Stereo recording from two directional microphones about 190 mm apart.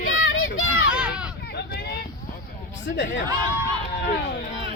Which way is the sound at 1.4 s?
60° left (ahead or behind).